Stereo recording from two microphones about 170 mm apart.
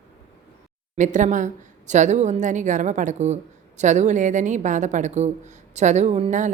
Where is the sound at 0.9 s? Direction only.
45° right (ahead or behind).